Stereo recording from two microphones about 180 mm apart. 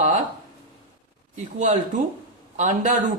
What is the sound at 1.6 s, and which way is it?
Speech, 45° right (ahead or behind).